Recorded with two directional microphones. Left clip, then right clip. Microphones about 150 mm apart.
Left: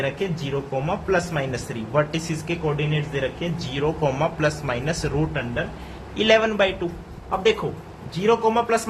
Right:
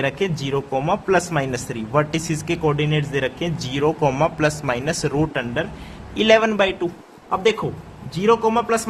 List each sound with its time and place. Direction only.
0.0 s speech: 60° right (ahead or behind)
2.6 s speech: 85° right
6.1 s speech: 55° right (ahead or behind)
8.1 s speech: 60° right (ahead or behind)